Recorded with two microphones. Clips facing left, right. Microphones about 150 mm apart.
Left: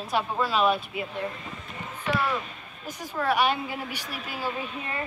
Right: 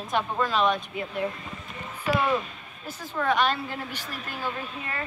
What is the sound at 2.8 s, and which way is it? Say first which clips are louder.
A woman's voice: even; 10° left (ahead or behind).